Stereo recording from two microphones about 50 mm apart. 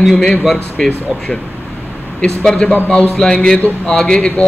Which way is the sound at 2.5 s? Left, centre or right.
Left.